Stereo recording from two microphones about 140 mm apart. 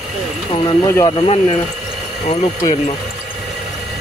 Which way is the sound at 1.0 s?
40° left (ahead or behind).